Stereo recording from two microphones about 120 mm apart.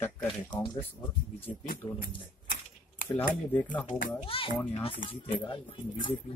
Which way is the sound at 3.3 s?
15° left (ahead or behind).